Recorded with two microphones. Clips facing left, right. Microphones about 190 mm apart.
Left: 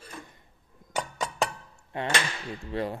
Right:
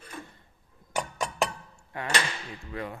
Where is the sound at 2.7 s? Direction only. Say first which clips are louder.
Left 5 dB; 30° left (ahead or behind).